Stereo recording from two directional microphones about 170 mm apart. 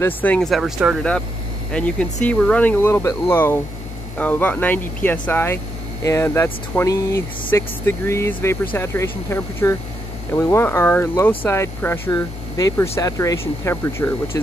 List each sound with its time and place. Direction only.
0.0 s speech: 10° left (ahead or behind)
1.7 s speech: 5° left (ahead or behind)